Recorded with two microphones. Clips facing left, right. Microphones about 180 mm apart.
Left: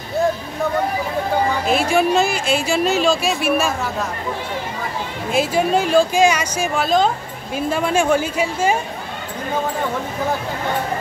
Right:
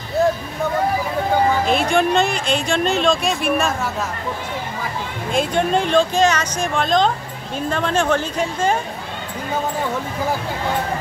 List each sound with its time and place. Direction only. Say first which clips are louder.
1.7 s speech: left 1 dB; 5° left (ahead or behind)
5.3 s speech: left 1 dB; 5° left (ahead or behind)